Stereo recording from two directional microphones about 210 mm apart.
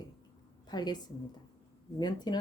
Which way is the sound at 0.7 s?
20° left (ahead or behind).